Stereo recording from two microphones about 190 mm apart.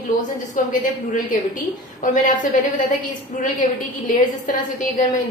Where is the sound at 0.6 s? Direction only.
40° left (ahead or behind).